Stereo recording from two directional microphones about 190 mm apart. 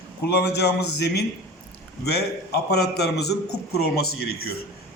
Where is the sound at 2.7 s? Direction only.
55° left (ahead or behind).